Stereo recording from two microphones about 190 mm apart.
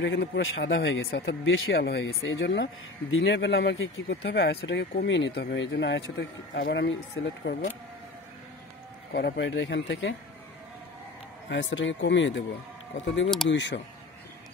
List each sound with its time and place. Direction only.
0.0 s speech: 65° left (ahead or behind)
9.1 s speech: 65° left (ahead or behind)
11.4 s speech: 70° left (ahead or behind)